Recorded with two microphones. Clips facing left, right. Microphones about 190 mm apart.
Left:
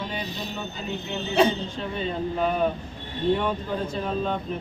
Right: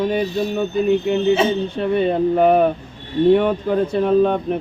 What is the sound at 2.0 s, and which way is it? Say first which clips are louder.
Speech: right 10 dB; 60° right (ahead or behind).